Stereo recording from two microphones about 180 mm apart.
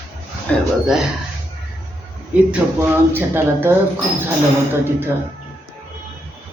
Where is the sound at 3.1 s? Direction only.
10° right (ahead or behind).